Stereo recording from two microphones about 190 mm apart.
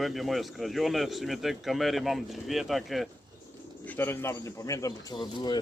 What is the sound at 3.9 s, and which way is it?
Speech, 10° left (ahead or behind).